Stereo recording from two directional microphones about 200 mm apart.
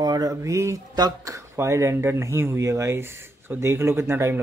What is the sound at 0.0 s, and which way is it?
Speech, 20° right (ahead or behind).